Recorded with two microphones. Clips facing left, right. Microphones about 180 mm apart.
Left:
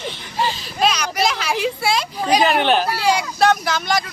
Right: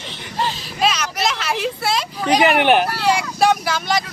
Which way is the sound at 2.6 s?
15° right (ahead or behind).